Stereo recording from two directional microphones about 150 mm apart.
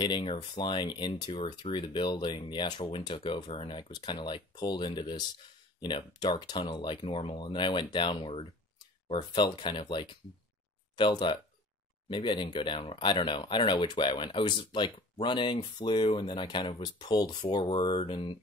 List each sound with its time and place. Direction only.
0.0 s speech: 30° left (ahead or behind)